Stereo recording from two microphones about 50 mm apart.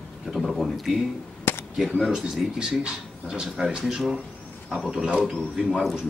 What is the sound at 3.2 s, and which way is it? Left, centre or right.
Speech, centre.